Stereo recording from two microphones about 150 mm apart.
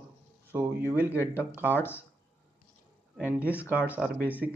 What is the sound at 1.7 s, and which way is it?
Speech, 15° left (ahead or behind).